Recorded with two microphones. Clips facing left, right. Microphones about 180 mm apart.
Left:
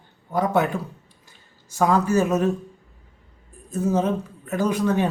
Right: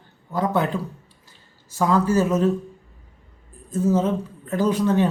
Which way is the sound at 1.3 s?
15° left (ahead or behind).